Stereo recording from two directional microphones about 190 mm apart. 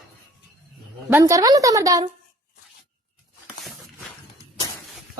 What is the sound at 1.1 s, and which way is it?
Speech, 20° right (ahead or behind).